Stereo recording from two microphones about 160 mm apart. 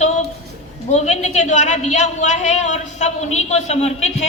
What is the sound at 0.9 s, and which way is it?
A man's voice, 45° left (ahead or behind).